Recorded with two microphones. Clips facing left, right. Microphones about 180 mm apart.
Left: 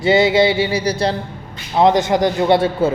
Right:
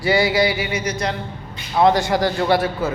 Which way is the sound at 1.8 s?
20° left (ahead or behind).